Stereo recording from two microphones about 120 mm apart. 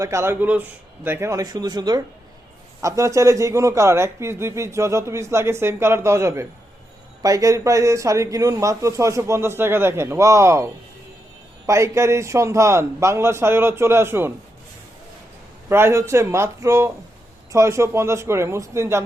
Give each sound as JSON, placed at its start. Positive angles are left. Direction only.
{"t": 0.0, "sound": "a man's voice", "side_deg": -25}
{"t": 15.7, "sound": "a man's voice", "side_deg": -20}